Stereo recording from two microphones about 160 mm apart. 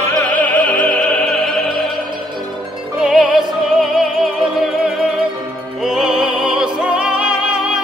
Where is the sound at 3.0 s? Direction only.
5° right (ahead or behind).